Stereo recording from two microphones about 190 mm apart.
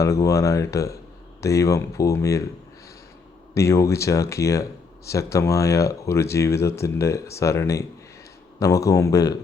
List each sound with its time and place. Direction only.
0.0 s speech: 15° left (ahead or behind)
3.5 s speech: 15° left (ahead or behind)